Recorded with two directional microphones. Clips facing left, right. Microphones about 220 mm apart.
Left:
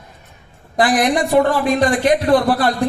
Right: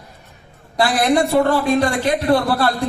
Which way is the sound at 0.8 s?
15° left (ahead or behind).